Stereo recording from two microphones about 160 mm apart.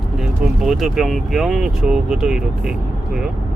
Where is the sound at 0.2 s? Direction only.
Centre (ahead or behind).